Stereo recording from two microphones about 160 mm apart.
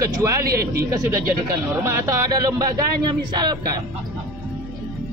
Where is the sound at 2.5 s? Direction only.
25° right (ahead or behind).